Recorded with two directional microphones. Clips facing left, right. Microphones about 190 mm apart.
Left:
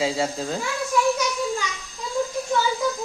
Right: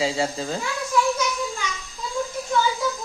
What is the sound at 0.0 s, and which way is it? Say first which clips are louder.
Speech: even; centre (ahead or behind).